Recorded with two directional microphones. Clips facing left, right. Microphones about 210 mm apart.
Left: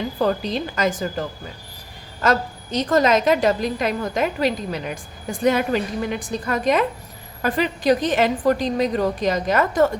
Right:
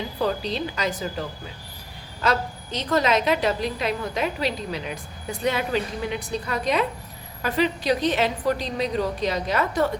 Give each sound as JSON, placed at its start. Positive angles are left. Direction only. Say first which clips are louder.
{"t": 0.2, "sound": "a woman's voice", "louder": "left 3 dB", "side_deg": 50}
{"t": 2.2, "sound": "a woman's voice", "louder": "left 4 dB", "side_deg": 45}